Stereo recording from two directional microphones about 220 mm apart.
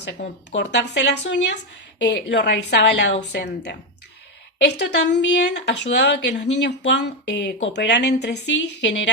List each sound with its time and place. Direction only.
0.0 s speech: 50° left (ahead or behind)